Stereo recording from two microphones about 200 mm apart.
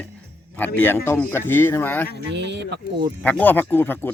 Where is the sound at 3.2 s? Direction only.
10° left (ahead or behind).